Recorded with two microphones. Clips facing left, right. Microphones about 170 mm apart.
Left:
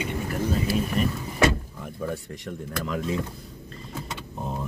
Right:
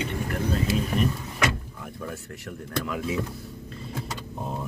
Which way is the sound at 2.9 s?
5° right (ahead or behind).